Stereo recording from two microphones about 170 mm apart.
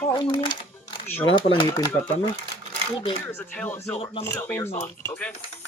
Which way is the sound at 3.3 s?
10° left (ahead or behind).